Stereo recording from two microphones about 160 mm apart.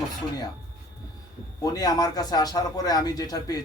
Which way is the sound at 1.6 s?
25° left (ahead or behind).